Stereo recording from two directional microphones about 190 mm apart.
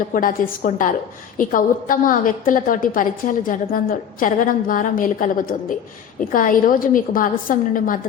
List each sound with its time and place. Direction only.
0.1 s a woman's voice: 45° left (ahead or behind)